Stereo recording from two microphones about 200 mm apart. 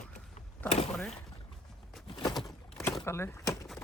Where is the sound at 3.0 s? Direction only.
15° left (ahead or behind).